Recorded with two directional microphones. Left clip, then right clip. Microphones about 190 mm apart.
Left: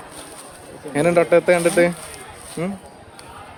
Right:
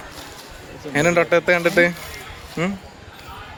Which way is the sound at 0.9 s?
5° left (ahead or behind).